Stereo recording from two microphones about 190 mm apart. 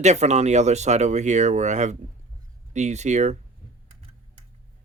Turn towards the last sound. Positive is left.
turn(degrees=-40)  # may be behind; listen again after turning